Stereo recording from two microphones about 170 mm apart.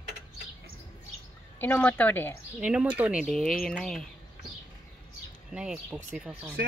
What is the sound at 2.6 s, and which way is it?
Speech, 5° right (ahead or behind).